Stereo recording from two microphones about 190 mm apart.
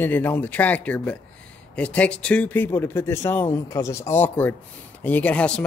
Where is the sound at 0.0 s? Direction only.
10° left (ahead or behind).